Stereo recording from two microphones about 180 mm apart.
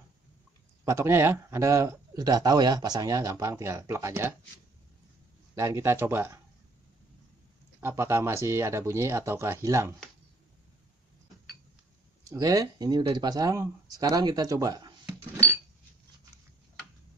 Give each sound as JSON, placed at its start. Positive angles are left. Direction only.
{"t": 0.8, "sound": "a man's voice", "side_deg": -15}
{"t": 5.6, "sound": "a man's voice", "side_deg": -15}
{"t": 7.8, "sound": "a man's voice", "side_deg": -15}
{"t": 12.3, "sound": "speech", "side_deg": -20}